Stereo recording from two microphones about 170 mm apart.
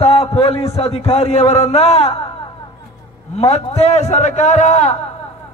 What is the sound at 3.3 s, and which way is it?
A man's voice, 35° left (ahead or behind).